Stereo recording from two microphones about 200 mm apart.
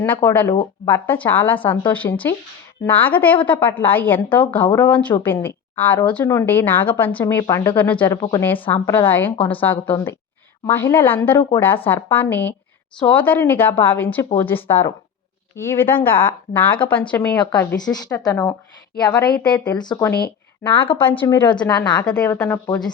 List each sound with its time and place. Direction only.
0.0 s a woman's voice: 10° left (ahead or behind); by 21.0 s 25° left (ahead or behind)
21.0 s a woman's voice: 10° left (ahead or behind)